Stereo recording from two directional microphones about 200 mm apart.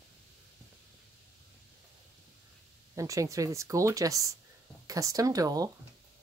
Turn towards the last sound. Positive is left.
turn(degrees=-20)  # may be behind; listen again after turning